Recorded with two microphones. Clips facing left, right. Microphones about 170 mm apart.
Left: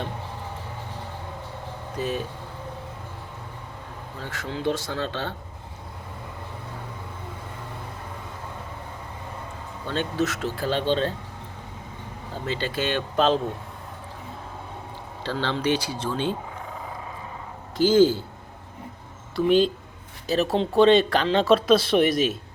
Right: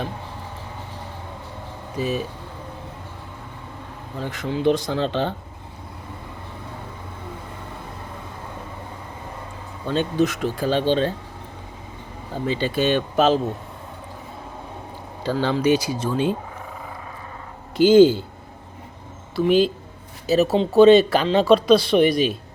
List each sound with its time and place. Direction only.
2.0 s speech: 10° right (ahead or behind)
4.2 s speech: 15° right (ahead or behind)
9.8 s speech: 15° right (ahead or behind)
12.5 s speech: 15° right (ahead or behind)
15.2 s speech: 10° right (ahead or behind)
17.8 s speech: 15° right (ahead or behind)
19.5 s speech: 5° right (ahead or behind)